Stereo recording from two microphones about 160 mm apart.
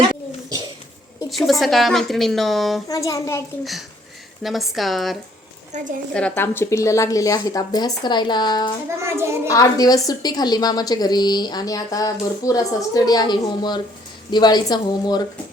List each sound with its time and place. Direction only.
1.5 s a woman's voice: centre (ahead or behind)
2.9 s a woman's voice: 20° left (ahead or behind)
3.6 s a woman's voice: centre (ahead or behind)
5.7 s a woman's voice: 50° right (ahead or behind)
6.1 s a woman's voice: 10° left (ahead or behind); by 8.7 s 25° left (ahead or behind)
9.0 s a child's voice: 15° right (ahead or behind)
9.5 s a woman's voice: 20° left (ahead or behind)